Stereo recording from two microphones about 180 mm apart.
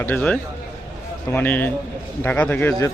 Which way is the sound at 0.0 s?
10° left (ahead or behind).